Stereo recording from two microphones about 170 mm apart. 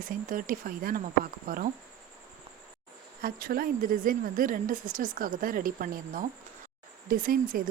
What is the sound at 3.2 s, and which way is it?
Speech, 60° right (ahead or behind).